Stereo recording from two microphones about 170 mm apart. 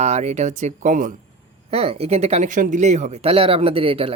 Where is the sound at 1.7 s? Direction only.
35° right (ahead or behind).